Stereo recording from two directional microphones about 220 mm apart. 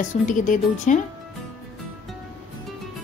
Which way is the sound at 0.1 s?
35° left (ahead or behind).